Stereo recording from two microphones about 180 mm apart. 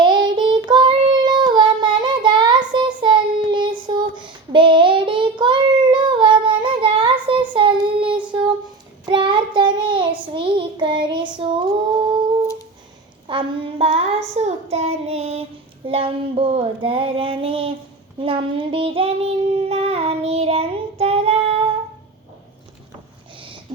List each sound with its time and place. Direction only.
0.0 s child singing: 25° right (ahead or behind)
13.2 s a sound: 30° right (ahead or behind)
14.3 s child singing: 35° right (ahead or behind)
15.9 s female singing: 30° right (ahead or behind)
18.2 s child singing: 30° right (ahead or behind)